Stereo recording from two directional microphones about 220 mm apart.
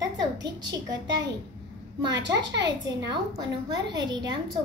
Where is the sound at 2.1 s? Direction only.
50° right (ahead or behind).